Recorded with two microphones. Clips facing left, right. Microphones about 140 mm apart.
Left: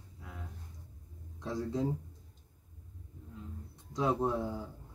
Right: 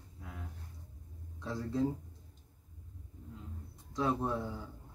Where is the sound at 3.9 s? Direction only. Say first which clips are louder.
Left 2 dB; 15° left (ahead or behind).